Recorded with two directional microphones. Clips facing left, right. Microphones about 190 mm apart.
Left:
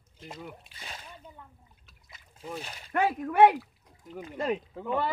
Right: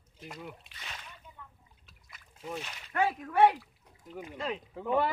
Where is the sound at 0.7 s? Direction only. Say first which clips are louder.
Left 3 dB; 30° left (ahead or behind).